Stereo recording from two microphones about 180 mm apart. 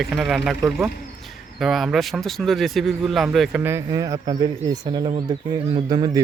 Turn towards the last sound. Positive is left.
turn(degrees=-25)  # may be behind; listen again after turning